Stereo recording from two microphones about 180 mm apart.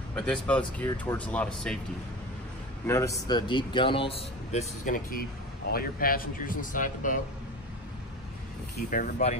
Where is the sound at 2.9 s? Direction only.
15° left (ahead or behind).